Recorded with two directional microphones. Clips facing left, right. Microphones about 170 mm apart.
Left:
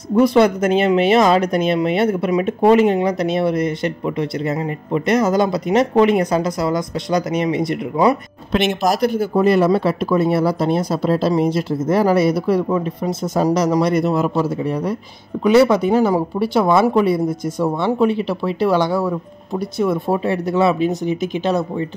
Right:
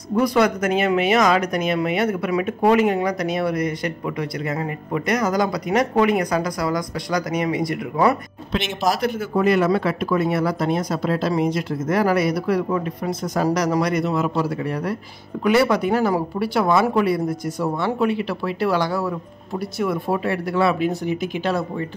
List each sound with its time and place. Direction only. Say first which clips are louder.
0.1 s speech: left 5 dB; 25° left (ahead or behind)
8.5 s speech: left 5 dB; 50° left (ahead or behind); by 14.0 s 25° left (ahead or behind)
14.0 s a man's voice: left 4 dB; 35° left (ahead or behind)
14.3 s speech: left 4 dB; 20° left (ahead or behind)